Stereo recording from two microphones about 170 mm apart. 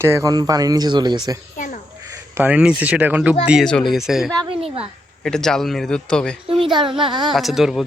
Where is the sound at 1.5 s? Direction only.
50° left (ahead or behind).